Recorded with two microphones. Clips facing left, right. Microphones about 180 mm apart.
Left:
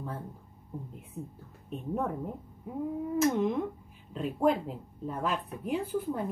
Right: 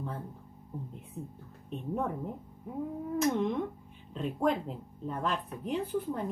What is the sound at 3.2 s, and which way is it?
Speech, 5° left (ahead or behind).